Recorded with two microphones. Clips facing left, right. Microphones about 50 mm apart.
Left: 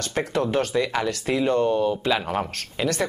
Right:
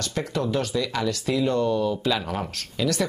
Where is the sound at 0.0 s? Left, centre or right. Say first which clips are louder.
Left 3 dB; left.